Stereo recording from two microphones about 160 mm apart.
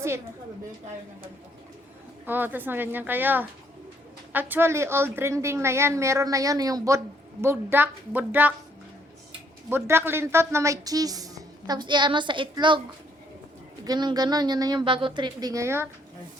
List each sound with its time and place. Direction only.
2.2 s a woman's voice: 10° right (ahead or behind)
9.6 s a woman's voice: 15° right (ahead or behind); by 12.8 s 30° right (ahead or behind)
13.8 s a woman's voice: 25° right (ahead or behind)